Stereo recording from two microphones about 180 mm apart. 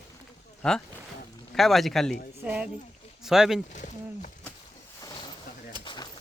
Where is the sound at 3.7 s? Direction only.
45° left (ahead or behind).